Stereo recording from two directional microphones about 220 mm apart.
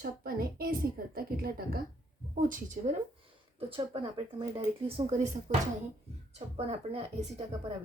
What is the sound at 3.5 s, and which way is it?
Speech, 25° right (ahead or behind).